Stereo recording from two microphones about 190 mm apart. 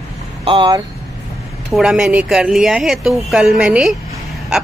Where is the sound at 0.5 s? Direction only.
25° right (ahead or behind).